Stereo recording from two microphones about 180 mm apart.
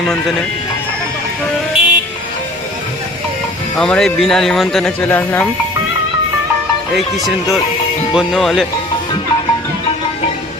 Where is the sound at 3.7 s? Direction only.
5° left (ahead or behind).